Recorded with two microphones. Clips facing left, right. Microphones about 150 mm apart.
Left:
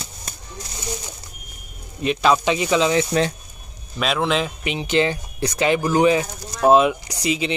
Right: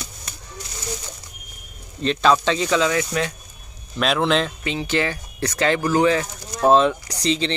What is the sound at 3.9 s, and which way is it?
Speech, centre (ahead or behind).